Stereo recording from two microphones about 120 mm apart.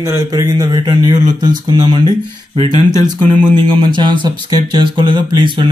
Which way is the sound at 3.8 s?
40° right (ahead or behind).